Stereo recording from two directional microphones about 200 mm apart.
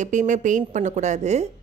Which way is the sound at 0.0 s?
40° right (ahead or behind).